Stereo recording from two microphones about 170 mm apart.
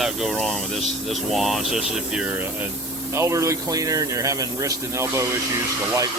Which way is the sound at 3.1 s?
15° right (ahead or behind).